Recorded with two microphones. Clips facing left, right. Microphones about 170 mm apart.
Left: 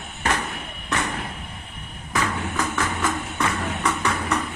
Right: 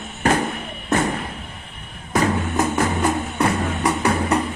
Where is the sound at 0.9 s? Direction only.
40° right (ahead or behind).